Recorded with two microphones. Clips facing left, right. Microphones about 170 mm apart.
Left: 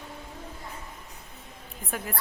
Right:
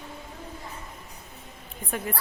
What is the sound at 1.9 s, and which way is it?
Speech, 5° left (ahead or behind).